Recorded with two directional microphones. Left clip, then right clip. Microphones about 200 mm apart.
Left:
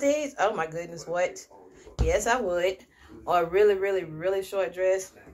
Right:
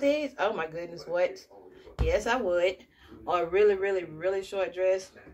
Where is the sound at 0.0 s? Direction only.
40° right (ahead or behind).